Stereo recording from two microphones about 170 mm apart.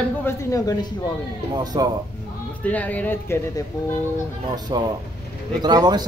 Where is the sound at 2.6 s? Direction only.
10° left (ahead or behind).